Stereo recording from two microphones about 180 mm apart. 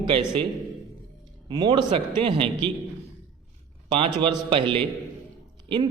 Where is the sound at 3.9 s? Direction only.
30° right (ahead or behind).